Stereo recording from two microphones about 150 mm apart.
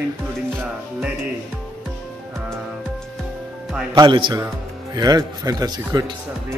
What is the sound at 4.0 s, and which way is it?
Speech, 30° right (ahead or behind).